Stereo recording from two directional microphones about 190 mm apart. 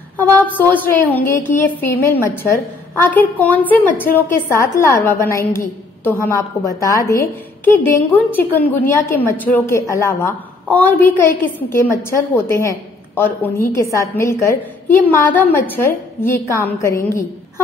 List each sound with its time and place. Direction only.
0.2 s a woman's voice: 10° left (ahead or behind)